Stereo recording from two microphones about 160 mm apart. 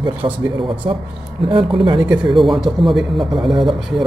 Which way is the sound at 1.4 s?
30° right (ahead or behind).